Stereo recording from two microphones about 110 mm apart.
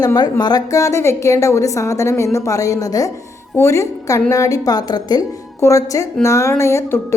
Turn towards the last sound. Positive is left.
turn(degrees=25)  # may be behind; listen again after turning